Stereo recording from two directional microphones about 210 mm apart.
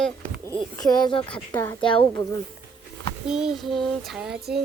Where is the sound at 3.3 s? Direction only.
5° right (ahead or behind).